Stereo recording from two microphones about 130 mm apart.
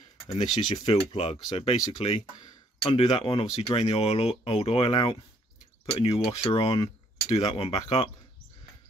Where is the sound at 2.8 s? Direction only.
40° left (ahead or behind).